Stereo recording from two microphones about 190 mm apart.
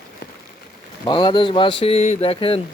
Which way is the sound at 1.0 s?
20° left (ahead or behind).